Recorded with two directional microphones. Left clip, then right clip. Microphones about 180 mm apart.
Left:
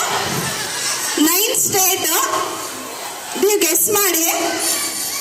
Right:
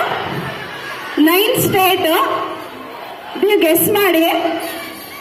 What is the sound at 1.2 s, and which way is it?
Speech, 20° right (ahead or behind).